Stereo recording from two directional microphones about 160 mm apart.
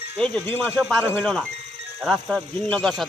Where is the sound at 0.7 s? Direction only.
5° right (ahead or behind).